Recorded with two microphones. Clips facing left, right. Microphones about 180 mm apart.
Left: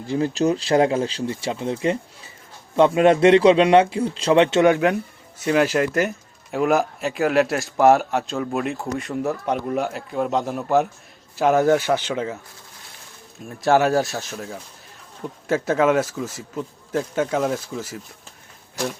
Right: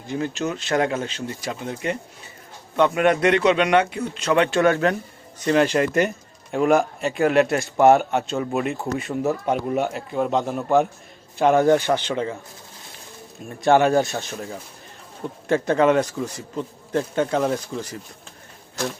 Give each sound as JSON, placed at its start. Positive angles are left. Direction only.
{"t": 0.1, "sound": "a man's voice", "side_deg": 35}
{"t": 13.5, "sound": "speech", "side_deg": 0}